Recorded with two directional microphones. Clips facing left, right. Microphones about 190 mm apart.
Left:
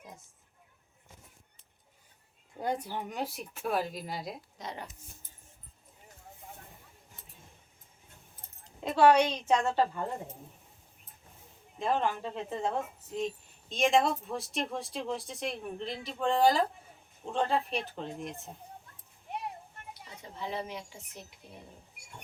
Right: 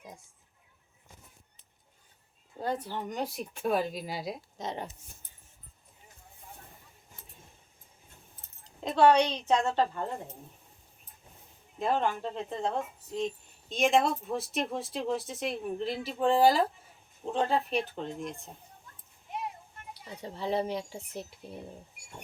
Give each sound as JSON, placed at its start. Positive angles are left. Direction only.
{"t": 2.6, "sound": "speech", "side_deg": 15}
{"t": 4.5, "sound": "speech", "side_deg": -25}
{"t": 8.8, "sound": "a woman's voice", "side_deg": 5}
{"t": 11.8, "sound": "speech", "side_deg": 0}
{"t": 19.3, "sound": "a sound", "side_deg": 60}
{"t": 20.1, "sound": "speech", "side_deg": -35}